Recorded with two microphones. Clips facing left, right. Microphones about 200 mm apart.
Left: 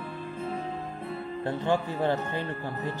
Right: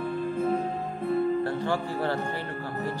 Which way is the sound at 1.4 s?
20° left (ahead or behind).